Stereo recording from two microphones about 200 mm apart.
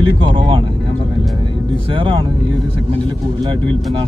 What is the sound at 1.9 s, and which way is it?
Speech, 25° right (ahead or behind).